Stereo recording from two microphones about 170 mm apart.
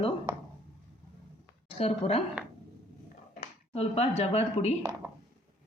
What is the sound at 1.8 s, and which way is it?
Speech, 35° left (ahead or behind).